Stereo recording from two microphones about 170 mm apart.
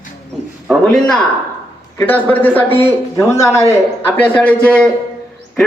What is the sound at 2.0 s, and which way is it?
A man's voice, 10° left (ahead or behind).